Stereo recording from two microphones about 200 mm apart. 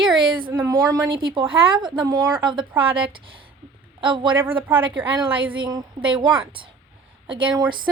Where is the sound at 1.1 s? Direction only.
25° right (ahead or behind).